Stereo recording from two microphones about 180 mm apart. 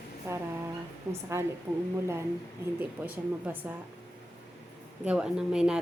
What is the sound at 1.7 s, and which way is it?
Speech, 5° right (ahead or behind).